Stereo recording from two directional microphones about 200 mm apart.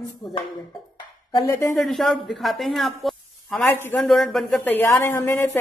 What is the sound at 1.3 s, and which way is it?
Speech, 15° left (ahead or behind).